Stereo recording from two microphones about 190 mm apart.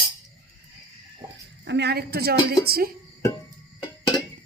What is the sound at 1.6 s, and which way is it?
A woman's voice, 65° right (ahead or behind).